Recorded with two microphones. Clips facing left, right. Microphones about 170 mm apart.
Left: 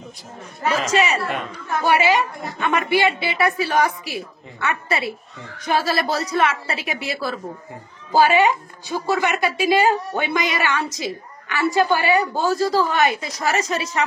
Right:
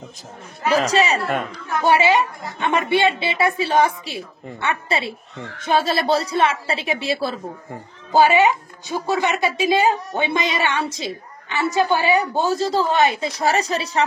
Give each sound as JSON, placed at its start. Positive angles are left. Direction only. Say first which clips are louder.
{"t": 0.7, "sound": "a woman's voice", "louder": "right 2 dB", "side_deg": -35}